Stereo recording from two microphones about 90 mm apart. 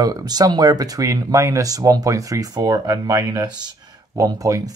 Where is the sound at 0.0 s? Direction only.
45° right (ahead or behind).